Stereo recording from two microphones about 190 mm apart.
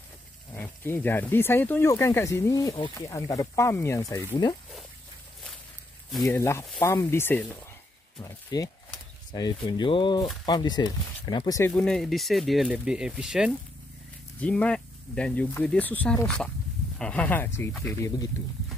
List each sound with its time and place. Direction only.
0.6 s speech: 10° left (ahead or behind)
6.2 s speech: 15° left (ahead or behind)
11.7 s speech: centre (ahead or behind); by 18.3 s 15° left (ahead or behind)